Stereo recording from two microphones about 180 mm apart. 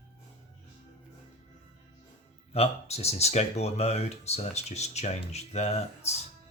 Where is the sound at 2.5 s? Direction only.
35° left (ahead or behind).